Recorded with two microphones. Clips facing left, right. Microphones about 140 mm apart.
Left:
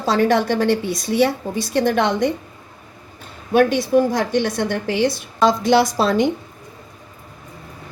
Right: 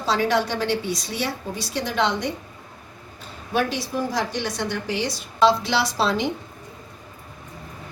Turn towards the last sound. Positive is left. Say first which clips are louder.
# left 7 dB
turn(degrees=50)  # may be behind; listen again after turning